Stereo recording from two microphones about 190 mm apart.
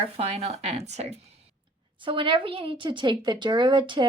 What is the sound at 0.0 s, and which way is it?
Speech, 35° right (ahead or behind).